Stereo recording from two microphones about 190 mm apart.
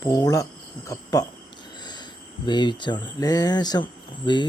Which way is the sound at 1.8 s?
25° left (ahead or behind).